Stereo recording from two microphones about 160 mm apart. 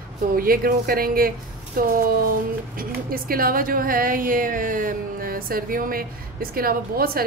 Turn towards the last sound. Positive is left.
turn(degrees=-70)  # may be behind; listen again after turning